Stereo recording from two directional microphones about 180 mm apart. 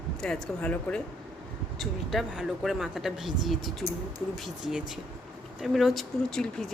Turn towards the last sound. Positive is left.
turn(degrees=0)  # may be behind; listen again after turning